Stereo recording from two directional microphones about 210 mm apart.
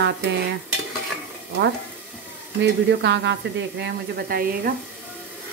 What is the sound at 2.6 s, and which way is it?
Speech, 55° right (ahead or behind).